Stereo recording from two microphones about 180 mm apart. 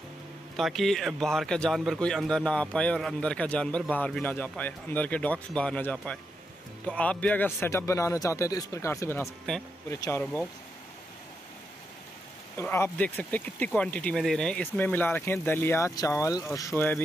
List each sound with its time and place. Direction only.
0.6 s a man's voice: centre (ahead or behind); by 10.2 s 15° left (ahead or behind)
12.5 s speech: 15° left (ahead or behind)